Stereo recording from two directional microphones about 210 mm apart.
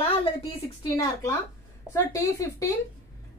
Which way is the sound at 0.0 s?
25° left (ahead or behind).